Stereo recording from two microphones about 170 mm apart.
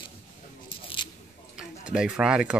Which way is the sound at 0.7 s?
30° left (ahead or behind).